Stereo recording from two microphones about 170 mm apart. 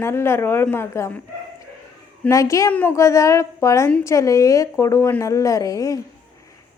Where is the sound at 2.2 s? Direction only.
20° left (ahead or behind).